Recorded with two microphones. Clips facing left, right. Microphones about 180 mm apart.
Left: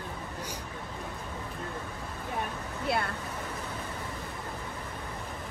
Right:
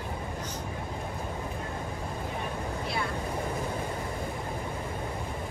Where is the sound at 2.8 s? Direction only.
60° left (ahead or behind).